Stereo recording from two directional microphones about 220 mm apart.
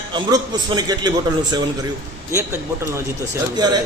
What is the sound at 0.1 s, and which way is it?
A man's voice, 20° right (ahead or behind).